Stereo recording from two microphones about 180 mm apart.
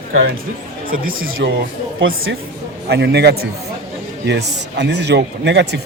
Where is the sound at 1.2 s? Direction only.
90° right.